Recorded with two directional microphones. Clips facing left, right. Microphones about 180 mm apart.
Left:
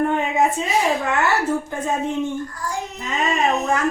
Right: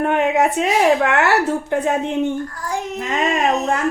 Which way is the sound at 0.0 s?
75° right (ahead or behind).